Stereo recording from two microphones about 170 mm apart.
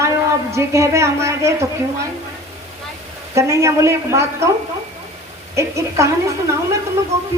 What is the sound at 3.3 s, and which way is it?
A woman's voice, 15° right (ahead or behind).